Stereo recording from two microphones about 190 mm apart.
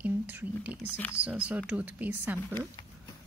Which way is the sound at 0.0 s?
10° right (ahead or behind).